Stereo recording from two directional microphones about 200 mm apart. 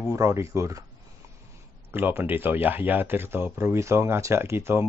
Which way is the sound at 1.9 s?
10° right (ahead or behind).